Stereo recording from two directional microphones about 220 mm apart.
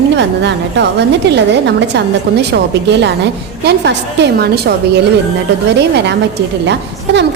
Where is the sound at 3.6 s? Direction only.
50° right (ahead or behind).